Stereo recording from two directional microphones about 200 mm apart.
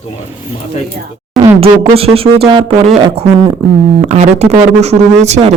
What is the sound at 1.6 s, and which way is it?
Speech, 30° right (ahead or behind).